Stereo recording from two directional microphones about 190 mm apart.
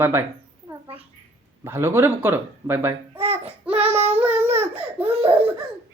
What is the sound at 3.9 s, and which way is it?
Child singing, 35° right (ahead or behind).